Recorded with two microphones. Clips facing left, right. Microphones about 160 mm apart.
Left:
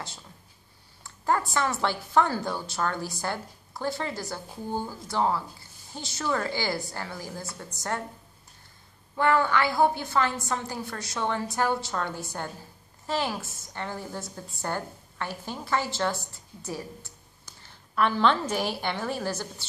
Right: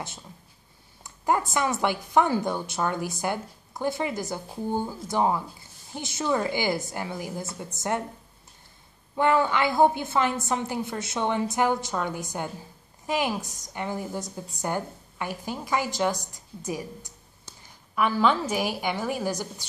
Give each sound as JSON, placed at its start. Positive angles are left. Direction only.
{"t": 1.0, "sound": "a woman's voice", "side_deg": -15}
{"t": 9.1, "sound": "a woman's voice", "side_deg": -20}